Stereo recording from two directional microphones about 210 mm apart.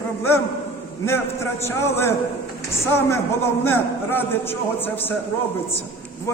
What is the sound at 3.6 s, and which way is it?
Speech, 10° left (ahead or behind).